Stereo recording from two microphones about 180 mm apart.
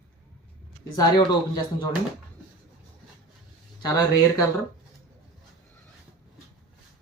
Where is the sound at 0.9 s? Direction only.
20° left (ahead or behind).